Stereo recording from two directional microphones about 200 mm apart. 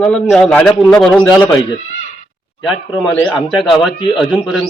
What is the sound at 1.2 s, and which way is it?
Speech, 20° left (ahead or behind).